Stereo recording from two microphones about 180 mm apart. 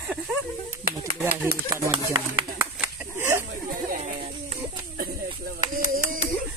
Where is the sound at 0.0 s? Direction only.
5° right (ahead or behind).